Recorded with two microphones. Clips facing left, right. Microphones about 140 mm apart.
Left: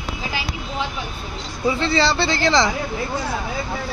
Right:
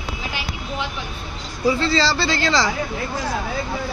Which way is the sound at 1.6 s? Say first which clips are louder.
Even; 20° left (ahead or behind).